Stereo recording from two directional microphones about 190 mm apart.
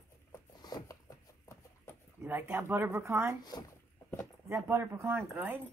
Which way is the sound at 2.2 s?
10° right (ahead or behind).